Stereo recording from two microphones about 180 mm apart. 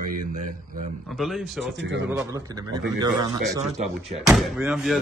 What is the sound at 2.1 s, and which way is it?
Speech, 10° right (ahead or behind).